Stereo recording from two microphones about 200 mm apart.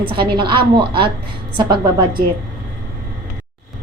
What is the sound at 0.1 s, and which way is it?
Speech, 25° right (ahead or behind).